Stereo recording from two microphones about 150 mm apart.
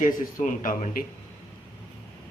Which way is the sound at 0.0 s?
60° left (ahead or behind).